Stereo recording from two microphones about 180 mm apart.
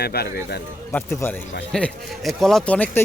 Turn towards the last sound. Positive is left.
turn(degrees=5)  # may be behind; listen again after turning